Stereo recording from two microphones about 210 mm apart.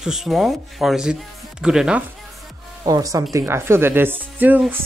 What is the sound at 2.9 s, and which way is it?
Speech, 15° right (ahead or behind).